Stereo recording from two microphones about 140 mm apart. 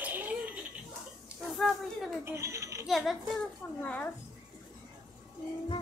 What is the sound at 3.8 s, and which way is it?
Speech, 10° left (ahead or behind).